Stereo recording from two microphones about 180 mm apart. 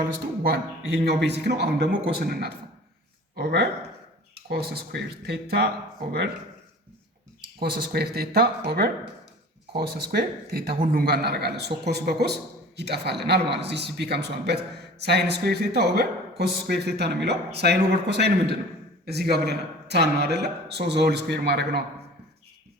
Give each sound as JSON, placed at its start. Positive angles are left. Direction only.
{"t": 0.0, "sound": "a man's voice", "side_deg": -60}
{"t": 7.6, "sound": "a man's voice", "side_deg": -60}